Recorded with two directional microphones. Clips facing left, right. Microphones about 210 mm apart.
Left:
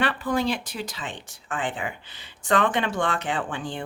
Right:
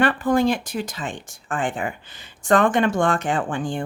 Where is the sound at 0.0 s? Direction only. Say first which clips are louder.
Right 6 dB; 45° right (ahead or behind).